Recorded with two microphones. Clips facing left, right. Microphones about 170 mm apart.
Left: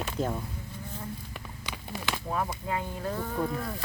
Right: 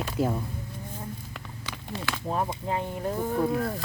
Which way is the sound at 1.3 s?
15° left (ahead or behind).